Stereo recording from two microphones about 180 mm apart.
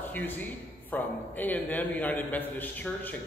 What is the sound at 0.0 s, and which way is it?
A man's voice, 10° left (ahead or behind).